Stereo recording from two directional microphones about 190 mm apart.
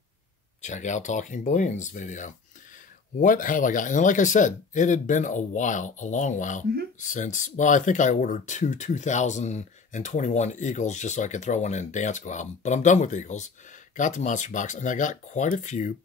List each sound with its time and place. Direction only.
0.6 s speech: 40° left (ahead or behind)